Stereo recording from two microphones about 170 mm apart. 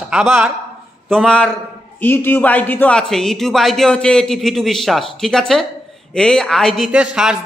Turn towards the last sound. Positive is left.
turn(degrees=-5)  # may be behind; listen again after turning